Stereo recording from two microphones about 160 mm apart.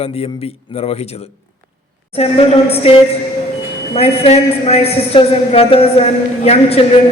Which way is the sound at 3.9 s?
40° left (ahead or behind).